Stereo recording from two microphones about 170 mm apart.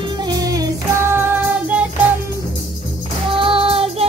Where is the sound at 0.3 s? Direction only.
20° right (ahead or behind).